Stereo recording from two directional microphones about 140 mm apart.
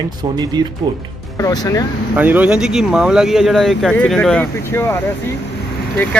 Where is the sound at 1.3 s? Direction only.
25° left (ahead or behind).